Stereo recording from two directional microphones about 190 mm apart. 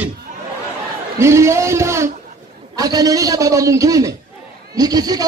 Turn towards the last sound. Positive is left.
turn(degrees=-20)  # may be behind; listen again after turning